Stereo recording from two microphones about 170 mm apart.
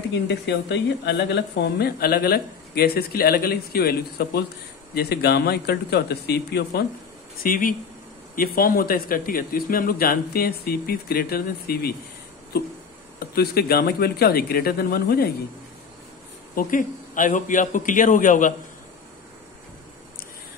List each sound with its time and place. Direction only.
0.1 s speech: 80° left
7.4 s a man's voice: 55° left (ahead or behind)
13.2 s speech: 70° left (ahead or behind)
16.5 s a man's voice: 50° left (ahead or behind)